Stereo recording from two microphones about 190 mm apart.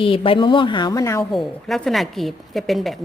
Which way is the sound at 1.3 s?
Centre (ahead or behind).